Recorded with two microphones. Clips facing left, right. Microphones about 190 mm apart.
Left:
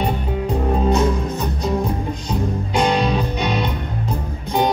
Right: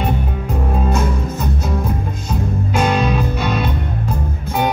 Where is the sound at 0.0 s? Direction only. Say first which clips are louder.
Even; 15° left (ahead or behind).